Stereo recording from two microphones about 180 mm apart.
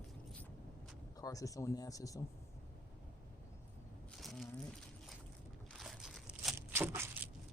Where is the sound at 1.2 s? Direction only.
20° left (ahead or behind).